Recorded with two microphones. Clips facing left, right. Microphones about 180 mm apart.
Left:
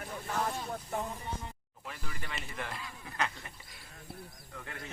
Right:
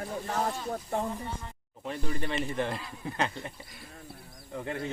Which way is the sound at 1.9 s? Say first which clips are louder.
Right 11 dB; 30° right (ahead or behind).